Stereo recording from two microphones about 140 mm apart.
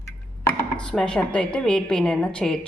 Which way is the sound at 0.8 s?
5° left (ahead or behind).